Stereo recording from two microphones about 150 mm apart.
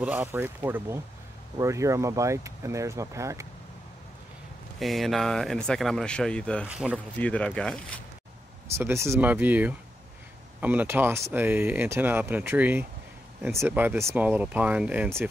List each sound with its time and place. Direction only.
0.0 s speech: 10° right (ahead or behind)
4.7 s speech: centre (ahead or behind)
6.6 s speech: 10° right (ahead or behind)
7.2 s speech: 10° left (ahead or behind)
8.6 s speech: 15° right (ahead or behind)